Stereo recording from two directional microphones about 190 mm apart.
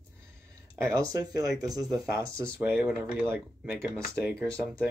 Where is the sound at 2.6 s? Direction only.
10° right (ahead or behind).